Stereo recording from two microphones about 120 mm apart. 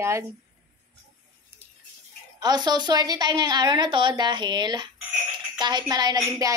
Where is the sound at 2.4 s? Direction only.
35° right (ahead or behind).